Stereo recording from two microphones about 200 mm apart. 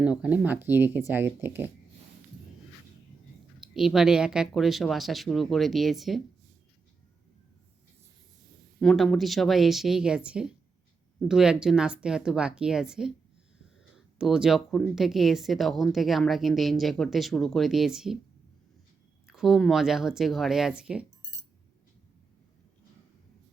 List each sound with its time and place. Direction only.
0.2 s speech: 5° right (ahead or behind)
3.6 s speech: centre (ahead or behind)
8.8 s speech: 5° left (ahead or behind)
14.2 s speech: 5° right (ahead or behind)
19.3 s speech: centre (ahead or behind)